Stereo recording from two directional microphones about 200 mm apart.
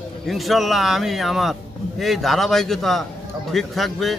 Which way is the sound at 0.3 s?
Centre (ahead or behind).